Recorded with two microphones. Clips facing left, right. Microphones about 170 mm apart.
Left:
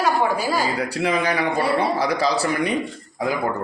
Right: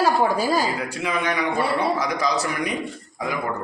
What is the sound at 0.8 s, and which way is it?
A man's voice, 35° left (ahead or behind).